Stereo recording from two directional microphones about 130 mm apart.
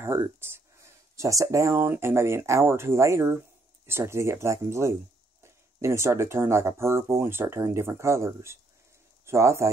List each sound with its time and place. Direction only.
1.1 s speech: 25° right (ahead or behind)